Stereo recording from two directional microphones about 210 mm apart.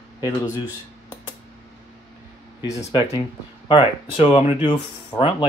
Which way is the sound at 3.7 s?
25° left (ahead or behind).